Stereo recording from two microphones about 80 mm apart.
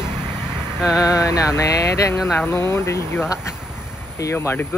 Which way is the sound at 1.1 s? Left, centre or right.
Left.